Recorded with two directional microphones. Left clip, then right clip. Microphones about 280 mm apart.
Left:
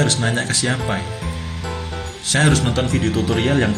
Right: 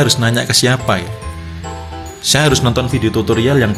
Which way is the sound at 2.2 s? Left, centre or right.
Right.